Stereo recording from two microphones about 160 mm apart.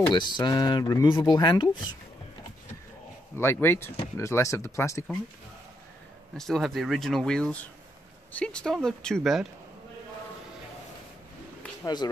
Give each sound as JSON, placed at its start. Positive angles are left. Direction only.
{"t": 0.1, "sound": "speech", "side_deg": 30}
{"t": 3.3, "sound": "speech", "side_deg": 15}
{"t": 6.3, "sound": "speech", "side_deg": 0}
{"t": 11.8, "sound": "speech", "side_deg": 25}